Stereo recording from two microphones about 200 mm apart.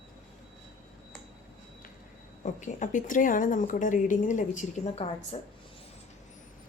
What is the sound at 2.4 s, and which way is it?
A woman's voice, 40° left (ahead or behind).